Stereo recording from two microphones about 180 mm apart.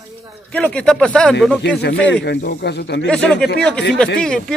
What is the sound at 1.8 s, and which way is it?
Speech, 70° left (ahead or behind).